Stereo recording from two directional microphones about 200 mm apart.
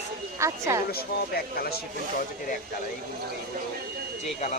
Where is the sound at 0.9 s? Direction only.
50° left (ahead or behind).